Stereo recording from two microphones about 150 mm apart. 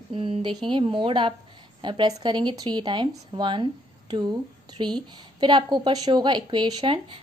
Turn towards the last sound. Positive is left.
turn(degrees=-35)  # may be behind; listen again after turning